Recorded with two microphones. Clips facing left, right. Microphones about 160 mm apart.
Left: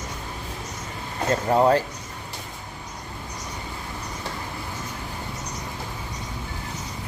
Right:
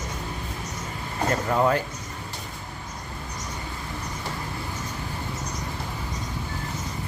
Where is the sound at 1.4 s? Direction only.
30° left (ahead or behind).